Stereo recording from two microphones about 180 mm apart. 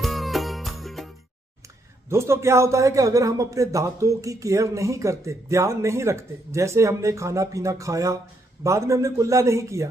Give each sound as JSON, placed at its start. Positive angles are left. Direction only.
{"t": 0.0, "sound": "music", "side_deg": 0}
{"t": 2.0, "sound": "a man's voice", "side_deg": -15}